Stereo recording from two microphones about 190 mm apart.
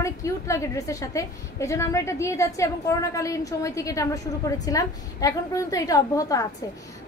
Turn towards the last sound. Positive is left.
turn(degrees=20)  # may be behind; listen again after turning